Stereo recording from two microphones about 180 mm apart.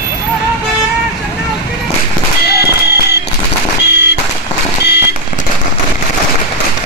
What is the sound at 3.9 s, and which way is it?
Vehicle, 65° left (ahead or behind).